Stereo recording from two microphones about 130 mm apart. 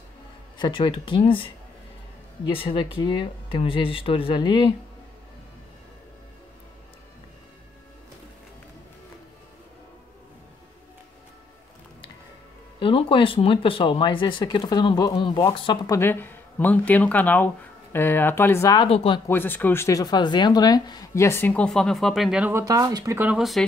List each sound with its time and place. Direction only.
0.6 s speech: 40° left (ahead or behind)
2.5 s speech: 40° left (ahead or behind)
12.7 s speech: 40° left (ahead or behind)
15.9 s speech: 15° left (ahead or behind)
18.8 s speech: 45° left (ahead or behind)
19.2 s speech: 15° left (ahead or behind); by 21.1 s 30° left (ahead or behind)
21.1 s speech: 20° left (ahead or behind); by 22.5 s 5° right (ahead or behind)
22.5 s speech: 25° right (ahead or behind)
23.1 s speech: 10° right (ahead or behind)